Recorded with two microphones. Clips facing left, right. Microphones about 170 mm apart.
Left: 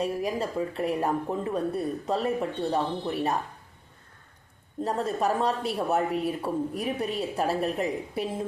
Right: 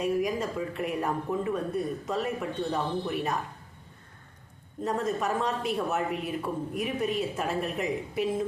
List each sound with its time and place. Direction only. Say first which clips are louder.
0.0 s a woman's voice: right 1 dB; 30° left (ahead or behind)
4.8 s a woman's voice: left 2 dB; 35° left (ahead or behind)